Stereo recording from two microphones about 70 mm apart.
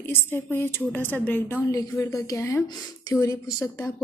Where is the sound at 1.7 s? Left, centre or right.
Left.